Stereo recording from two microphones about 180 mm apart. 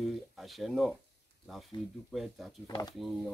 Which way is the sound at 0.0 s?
Centre (ahead or behind).